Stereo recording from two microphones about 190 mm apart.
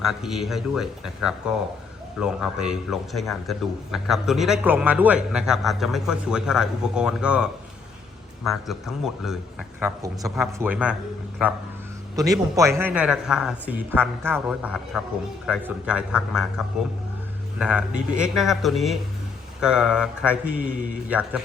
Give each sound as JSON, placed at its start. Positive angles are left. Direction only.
{"t": 0.0, "sound": "a man's voice", "side_deg": 0}
{"t": 8.4, "sound": "a man's voice", "side_deg": 0}
{"t": 9.8, "sound": "a man's voice", "side_deg": -15}
{"t": 12.1, "sound": "a man's voice", "side_deg": -20}
{"t": 17.6, "sound": "a man's voice", "side_deg": -5}